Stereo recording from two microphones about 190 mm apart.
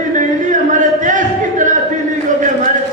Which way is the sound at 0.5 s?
40° right (ahead or behind).